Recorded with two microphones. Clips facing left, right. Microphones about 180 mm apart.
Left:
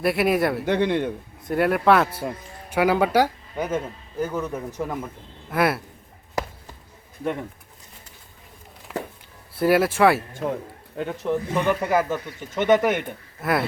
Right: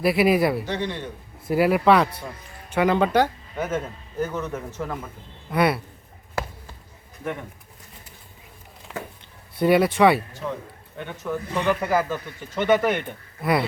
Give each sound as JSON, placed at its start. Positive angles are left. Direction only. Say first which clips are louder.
{"t": 0.0, "sound": "a man's voice", "louder": "right 2 dB", "side_deg": 0}
{"t": 0.6, "sound": "a man's voice", "louder": "left 7 dB", "side_deg": 60}
{"t": 1.5, "sound": "a man's voice", "louder": "right 1 dB", "side_deg": -5}
{"t": 5.5, "sound": "a man's voice", "louder": "right 1 dB", "side_deg": 0}
{"t": 8.9, "sound": "a sound", "louder": "left 4 dB", "side_deg": 5}
{"t": 9.6, "sound": "a man's voice", "louder": "right 1 dB", "side_deg": 5}
{"t": 10.9, "sound": "speech", "louder": "left 5 dB", "side_deg": 35}
{"t": 11.5, "sound": "speech", "louder": "right 1 dB", "side_deg": 15}
{"t": 12.8, "sound": "a man's voice", "louder": "left 1 dB", "side_deg": 0}